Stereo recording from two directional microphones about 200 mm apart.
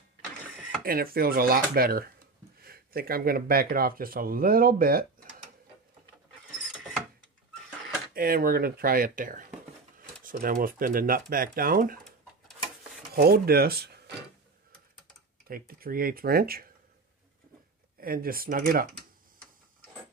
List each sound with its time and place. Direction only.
0.8 s speech: 45° right (ahead or behind)
8.1 s speech: 50° right (ahead or behind)
13.1 s speech: 50° right (ahead or behind)
15.4 s speech: 45° right (ahead or behind)
18.0 s speech: 45° right (ahead or behind)